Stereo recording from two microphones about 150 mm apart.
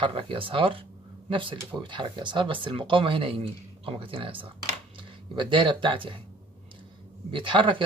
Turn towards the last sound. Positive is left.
turn(degrees=-35)  # may be behind; listen again after turning